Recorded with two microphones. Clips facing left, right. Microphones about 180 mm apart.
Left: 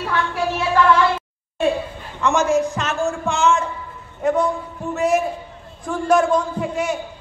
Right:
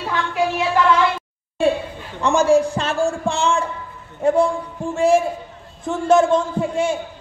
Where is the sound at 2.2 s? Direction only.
30° right (ahead or behind).